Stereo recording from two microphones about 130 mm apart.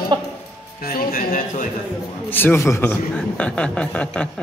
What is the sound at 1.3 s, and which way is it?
Speech, 90° left.